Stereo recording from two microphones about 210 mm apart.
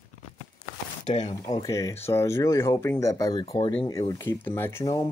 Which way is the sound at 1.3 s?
15° left (ahead or behind).